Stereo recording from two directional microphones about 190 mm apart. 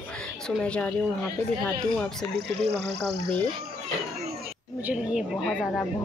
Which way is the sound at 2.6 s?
65° right (ahead or behind).